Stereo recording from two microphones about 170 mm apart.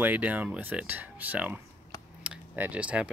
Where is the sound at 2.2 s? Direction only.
10° right (ahead or behind).